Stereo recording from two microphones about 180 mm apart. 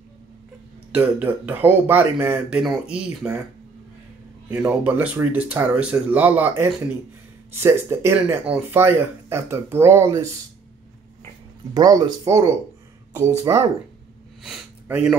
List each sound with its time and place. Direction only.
0.9 s speech: 10° right (ahead or behind)
4.5 s speech: 10° right (ahead or behind)
11.7 s speech: 20° right (ahead or behind)
14.4 s sniff: 5° right (ahead or behind)